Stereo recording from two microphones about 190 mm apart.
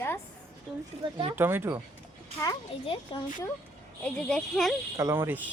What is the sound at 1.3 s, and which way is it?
Speech, 10° right (ahead or behind).